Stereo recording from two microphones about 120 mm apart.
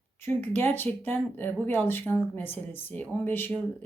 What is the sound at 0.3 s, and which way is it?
Speech, 15° left (ahead or behind).